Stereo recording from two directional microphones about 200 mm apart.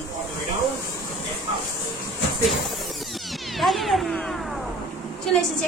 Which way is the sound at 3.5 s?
Centre (ahead or behind).